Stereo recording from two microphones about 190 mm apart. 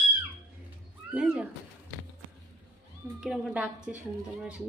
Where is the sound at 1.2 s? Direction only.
5° right (ahead or behind).